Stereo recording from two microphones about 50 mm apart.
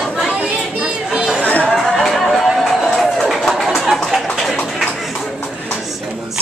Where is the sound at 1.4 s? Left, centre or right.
Left.